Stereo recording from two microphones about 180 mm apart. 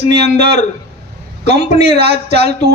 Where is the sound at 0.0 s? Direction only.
65° right (ahead or behind).